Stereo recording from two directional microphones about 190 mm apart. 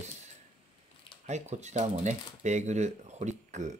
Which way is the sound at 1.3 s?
35° right (ahead or behind).